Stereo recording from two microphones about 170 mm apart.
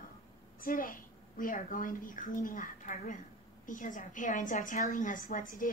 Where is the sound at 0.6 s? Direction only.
55° left (ahead or behind).